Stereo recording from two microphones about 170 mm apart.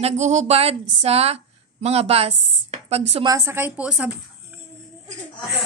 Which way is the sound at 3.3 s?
15° right (ahead or behind).